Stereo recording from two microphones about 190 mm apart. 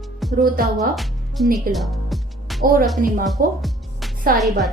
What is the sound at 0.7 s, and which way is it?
A woman's voice, centre (ahead or behind).